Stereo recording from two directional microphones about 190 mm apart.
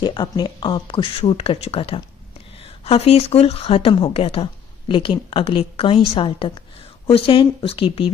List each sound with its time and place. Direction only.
0.0 s speech: 25° left (ahead or behind)